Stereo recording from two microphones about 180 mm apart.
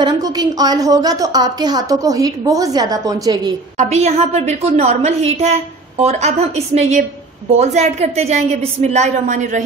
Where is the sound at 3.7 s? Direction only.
40° right (ahead or behind).